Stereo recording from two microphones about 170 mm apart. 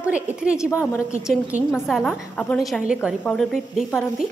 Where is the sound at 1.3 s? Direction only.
5° right (ahead or behind).